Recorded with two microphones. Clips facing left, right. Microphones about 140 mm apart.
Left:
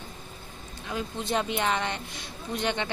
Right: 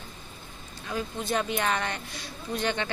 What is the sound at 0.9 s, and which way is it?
Speech, 25° left (ahead or behind).